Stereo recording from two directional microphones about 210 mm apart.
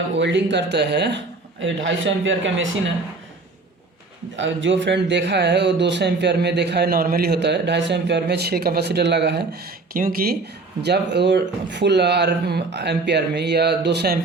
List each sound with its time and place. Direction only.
0.2 s speech: 60° right (ahead or behind)
4.4 s speech: 60° right (ahead or behind)